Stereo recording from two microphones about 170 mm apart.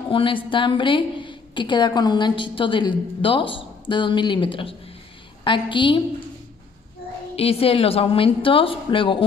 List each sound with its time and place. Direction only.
0.1 s a woman's voice: 30° left (ahead or behind)
7.3 s a woman's voice: 35° left (ahead or behind)